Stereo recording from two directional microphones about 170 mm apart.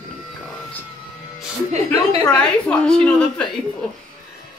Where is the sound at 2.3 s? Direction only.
5° left (ahead or behind).